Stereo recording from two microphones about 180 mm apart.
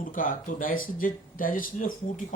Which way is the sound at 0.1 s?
50° left (ahead or behind).